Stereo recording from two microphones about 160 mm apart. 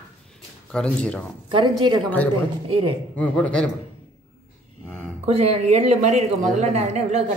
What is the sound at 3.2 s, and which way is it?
Speech, 5° left (ahead or behind).